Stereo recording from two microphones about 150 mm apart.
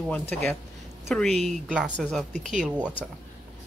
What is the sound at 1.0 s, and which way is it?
Speech, centre (ahead or behind).